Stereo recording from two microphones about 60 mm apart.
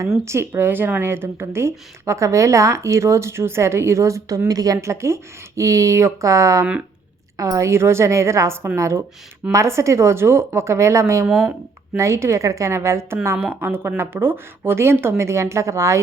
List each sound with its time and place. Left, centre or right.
0.3 s speech: right
4.4 s a woman's voice: right
4.8 s a woman's voice: right
7.7 s speech: right
13.5 s speech: right
15.2 s speech: right